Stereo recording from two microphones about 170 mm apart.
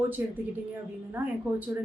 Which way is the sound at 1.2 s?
10° right (ahead or behind).